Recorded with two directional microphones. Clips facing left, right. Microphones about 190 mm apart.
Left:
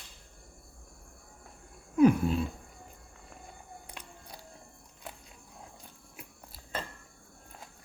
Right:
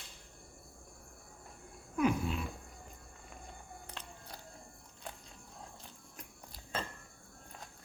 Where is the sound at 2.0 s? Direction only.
35° left (ahead or behind).